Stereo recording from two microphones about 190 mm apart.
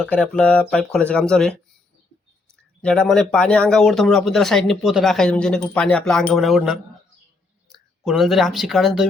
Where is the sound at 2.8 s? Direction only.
5° left (ahead or behind).